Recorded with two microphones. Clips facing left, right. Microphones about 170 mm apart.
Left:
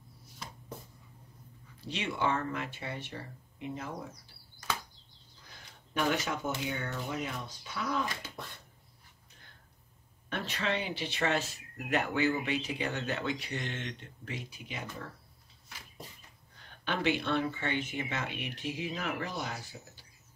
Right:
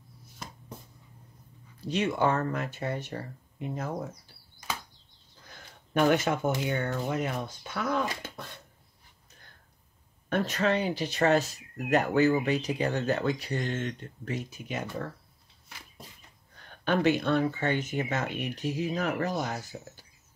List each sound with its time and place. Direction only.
1.8 s speech: 45° right (ahead or behind)
5.9 s speech: 50° right (ahead or behind)
10.3 s speech: 45° right (ahead or behind)
16.8 s speech: 45° right (ahead or behind)